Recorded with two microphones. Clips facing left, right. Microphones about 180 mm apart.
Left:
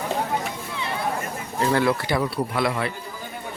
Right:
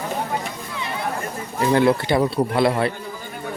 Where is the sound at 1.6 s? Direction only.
20° right (ahead or behind).